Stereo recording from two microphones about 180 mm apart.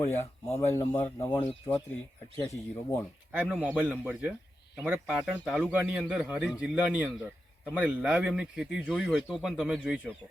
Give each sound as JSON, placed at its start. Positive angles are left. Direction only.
{"t": 0.0, "sound": "speech", "side_deg": 15}
{"t": 3.5, "sound": "speech", "side_deg": -10}